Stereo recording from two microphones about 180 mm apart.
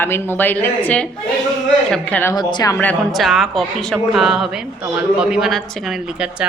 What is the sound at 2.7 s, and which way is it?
A woman's voice, 5° left (ahead or behind).